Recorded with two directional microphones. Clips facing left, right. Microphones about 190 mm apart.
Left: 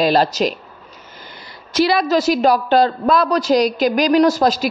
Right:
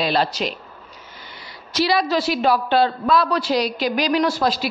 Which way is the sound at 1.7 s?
55° left (ahead or behind).